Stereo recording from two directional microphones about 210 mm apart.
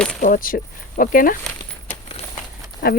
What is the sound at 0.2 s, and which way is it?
Speech, 40° left (ahead or behind).